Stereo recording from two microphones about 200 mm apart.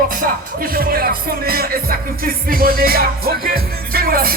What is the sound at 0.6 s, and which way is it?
Music, 45° right (ahead or behind).